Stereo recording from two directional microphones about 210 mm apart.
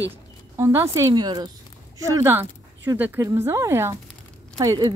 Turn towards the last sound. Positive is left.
turn(degrees=-15)  # may be behind; listen again after turning